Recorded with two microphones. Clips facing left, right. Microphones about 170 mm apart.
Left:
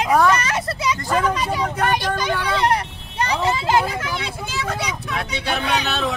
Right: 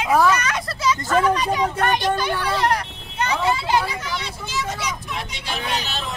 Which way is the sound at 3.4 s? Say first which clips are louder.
Left 2 dB; 45° left (ahead or behind).